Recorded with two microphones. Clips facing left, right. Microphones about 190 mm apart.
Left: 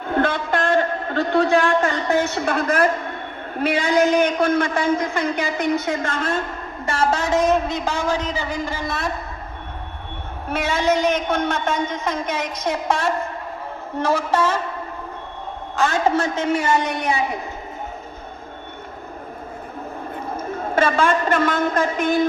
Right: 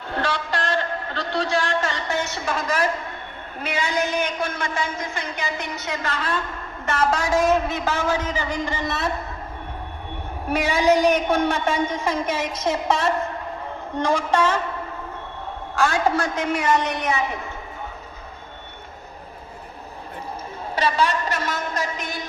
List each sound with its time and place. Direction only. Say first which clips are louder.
0.0 s a man's voice: left 6 dB; 55° left (ahead or behind)
6.8 s a man's voice: left 1 dB; 30° left (ahead or behind); by 9.1 s centre (ahead or behind)
10.5 s a man's voice: right 1 dB; 15° right (ahead or behind); by 14.6 s 10° left (ahead or behind)
15.7 s a woman's voice: left 2 dB; 20° left (ahead or behind)
20.3 s a woman's voice: left 8 dB; 50° left (ahead or behind)